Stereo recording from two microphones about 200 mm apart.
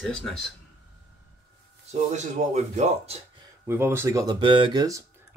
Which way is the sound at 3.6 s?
10° right (ahead or behind).